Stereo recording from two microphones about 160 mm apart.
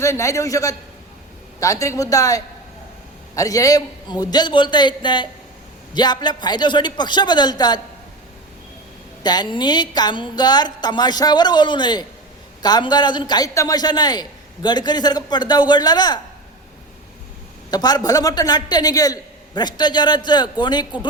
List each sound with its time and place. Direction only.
0.0 s a man's voice: 20° left (ahead or behind)
9.2 s a man's voice: 25° left (ahead or behind)
17.7 s a man's voice: 25° left (ahead or behind)